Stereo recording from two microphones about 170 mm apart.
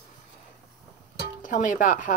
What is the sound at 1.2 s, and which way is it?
Speech, 50° left (ahead or behind).